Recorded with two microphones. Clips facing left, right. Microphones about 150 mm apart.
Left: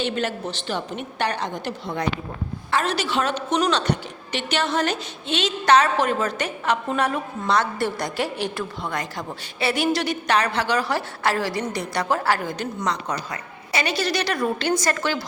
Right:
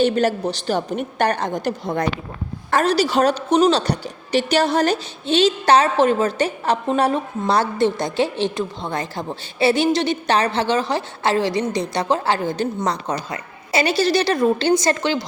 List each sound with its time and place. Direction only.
0.0 s a woman's voice: 40° right (ahead or behind); by 15.2 s 25° right (ahead or behind)